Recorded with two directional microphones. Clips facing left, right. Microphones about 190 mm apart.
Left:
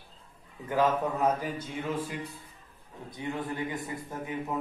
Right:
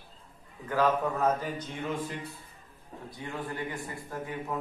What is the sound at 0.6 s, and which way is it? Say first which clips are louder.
A man's voice: even; 20° left (ahead or behind).